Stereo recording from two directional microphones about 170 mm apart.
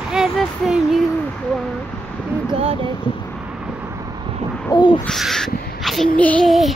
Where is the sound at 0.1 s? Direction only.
5° right (ahead or behind).